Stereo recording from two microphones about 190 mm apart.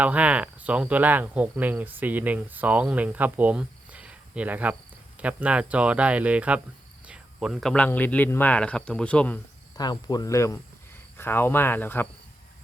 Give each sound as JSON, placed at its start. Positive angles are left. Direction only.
{"t": 0.0, "sound": "speech", "side_deg": -5}
{"t": 9.7, "sound": "speech", "side_deg": 20}